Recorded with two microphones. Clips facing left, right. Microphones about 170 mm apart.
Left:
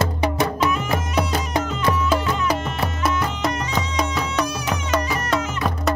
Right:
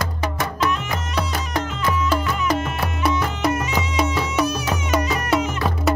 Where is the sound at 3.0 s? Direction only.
5° right (ahead or behind).